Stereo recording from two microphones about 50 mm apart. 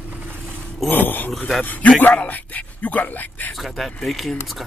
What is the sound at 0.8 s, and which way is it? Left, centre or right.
Speech, left.